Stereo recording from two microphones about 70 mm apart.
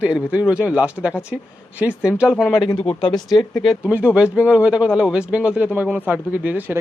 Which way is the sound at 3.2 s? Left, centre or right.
Left.